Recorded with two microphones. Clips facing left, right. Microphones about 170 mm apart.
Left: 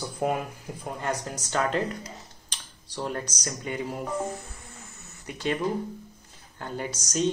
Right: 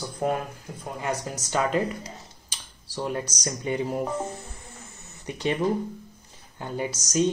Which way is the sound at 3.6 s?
25° right (ahead or behind).